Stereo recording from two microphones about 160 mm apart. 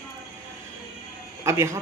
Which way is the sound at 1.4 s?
15° right (ahead or behind).